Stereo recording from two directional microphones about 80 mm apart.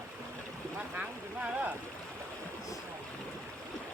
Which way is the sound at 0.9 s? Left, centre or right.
Centre.